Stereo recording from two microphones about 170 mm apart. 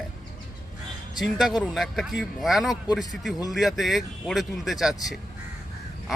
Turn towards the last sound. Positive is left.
turn(degrees=0)  # may be behind; listen again after turning